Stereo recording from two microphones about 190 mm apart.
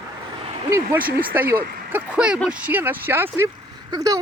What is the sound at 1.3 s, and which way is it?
Speech, 10° right (ahead or behind).